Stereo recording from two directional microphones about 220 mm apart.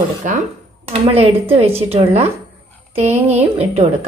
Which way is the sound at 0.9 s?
25° right (ahead or behind).